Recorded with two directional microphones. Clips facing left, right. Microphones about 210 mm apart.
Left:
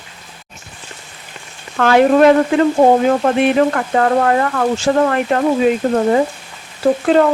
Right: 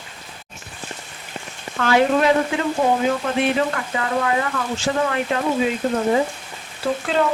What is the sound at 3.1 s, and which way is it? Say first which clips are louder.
Speech: left 7 dB; 50° left (ahead or behind).